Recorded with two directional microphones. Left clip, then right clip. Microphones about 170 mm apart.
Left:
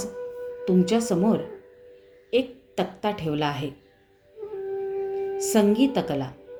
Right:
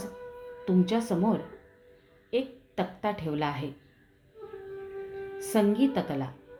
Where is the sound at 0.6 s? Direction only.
20° left (ahead or behind).